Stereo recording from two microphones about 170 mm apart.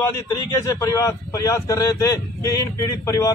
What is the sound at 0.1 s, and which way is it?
Speech, 20° left (ahead or behind).